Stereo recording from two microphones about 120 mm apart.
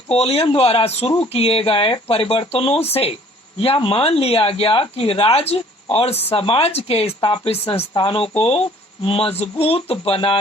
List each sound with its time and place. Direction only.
0.1 s speech: 55° left (ahead or behind)